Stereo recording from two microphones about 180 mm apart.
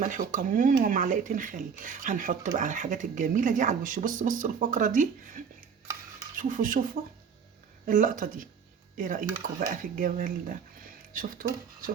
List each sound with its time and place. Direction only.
0.0 s speech: 45° right (ahead or behind)
7.9 s speech: 45° right (ahead or behind)